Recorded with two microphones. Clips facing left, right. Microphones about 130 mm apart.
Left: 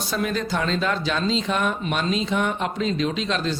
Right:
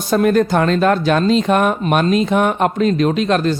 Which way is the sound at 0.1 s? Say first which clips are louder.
Right 12 dB; 55° right (ahead or behind).